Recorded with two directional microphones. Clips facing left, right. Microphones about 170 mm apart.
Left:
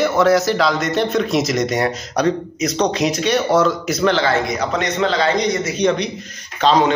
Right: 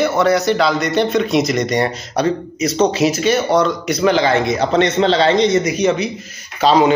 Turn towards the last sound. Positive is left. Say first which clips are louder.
# right 2 dB
turn(degrees=-10)  # may be behind; listen again after turning